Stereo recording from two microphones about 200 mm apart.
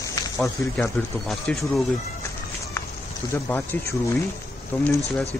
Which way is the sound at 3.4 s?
10° left (ahead or behind).